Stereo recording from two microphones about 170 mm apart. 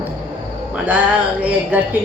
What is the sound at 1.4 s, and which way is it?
Speech, 10° right (ahead or behind).